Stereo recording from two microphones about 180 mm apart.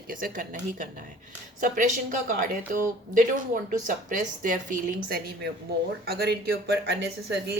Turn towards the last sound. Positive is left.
turn(degrees=-70)  # may be behind; listen again after turning